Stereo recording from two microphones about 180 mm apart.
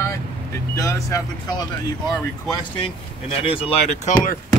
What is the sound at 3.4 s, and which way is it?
Speech, 30° left (ahead or behind).